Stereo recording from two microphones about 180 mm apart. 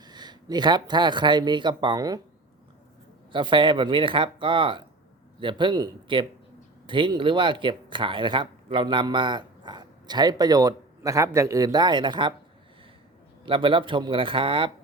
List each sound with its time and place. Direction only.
0.0 s speech: 25° right (ahead or behind)
3.3 s speech: 25° right (ahead or behind)
13.4 s speech: 30° right (ahead or behind)